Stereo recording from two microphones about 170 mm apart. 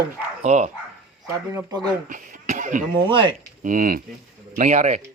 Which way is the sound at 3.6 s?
50° right (ahead or behind).